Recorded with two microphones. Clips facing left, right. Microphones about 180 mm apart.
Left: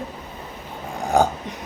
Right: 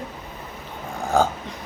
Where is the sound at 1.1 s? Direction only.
15° left (ahead or behind).